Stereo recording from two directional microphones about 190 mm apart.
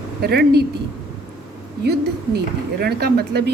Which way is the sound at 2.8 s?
55° right (ahead or behind).